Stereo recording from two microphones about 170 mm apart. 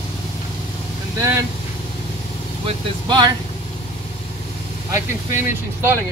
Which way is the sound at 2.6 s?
25° right (ahead or behind).